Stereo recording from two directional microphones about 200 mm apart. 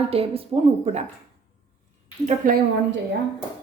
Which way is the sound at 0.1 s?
30° right (ahead or behind).